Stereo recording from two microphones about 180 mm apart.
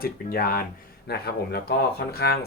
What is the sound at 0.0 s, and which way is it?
Speech, 55° left (ahead or behind).